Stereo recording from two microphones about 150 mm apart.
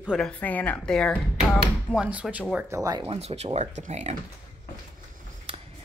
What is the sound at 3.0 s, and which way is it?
Speech, 40° right (ahead or behind).